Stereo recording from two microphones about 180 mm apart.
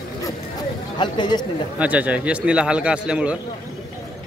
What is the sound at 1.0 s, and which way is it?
Speech, 25° left (ahead or behind).